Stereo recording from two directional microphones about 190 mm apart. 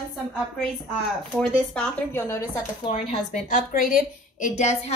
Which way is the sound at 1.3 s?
10° left (ahead or behind).